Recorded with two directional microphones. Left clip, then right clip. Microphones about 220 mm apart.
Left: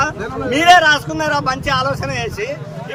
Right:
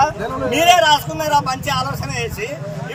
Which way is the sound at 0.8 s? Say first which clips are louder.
Left 1 dB; 20° left (ahead or behind).